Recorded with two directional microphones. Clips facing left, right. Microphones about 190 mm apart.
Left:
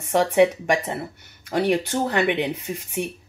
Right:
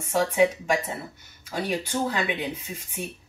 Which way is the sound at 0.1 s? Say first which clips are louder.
Left 4 dB; 70° left (ahead or behind).